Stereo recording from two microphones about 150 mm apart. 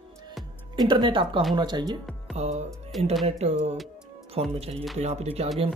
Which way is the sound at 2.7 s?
Centre (ahead or behind).